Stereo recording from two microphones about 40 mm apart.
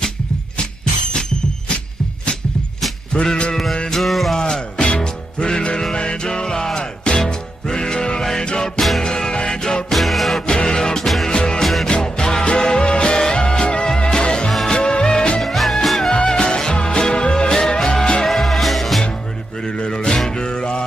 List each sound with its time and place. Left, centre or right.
3.1 s music: left
3.9 s music: centre
4.4 s music: centre
9.8 s music: centre
10.4 s music: centre
15.4 s music: centre
16.1 s music: centre
18.3 s music: centre
19.6 s music: left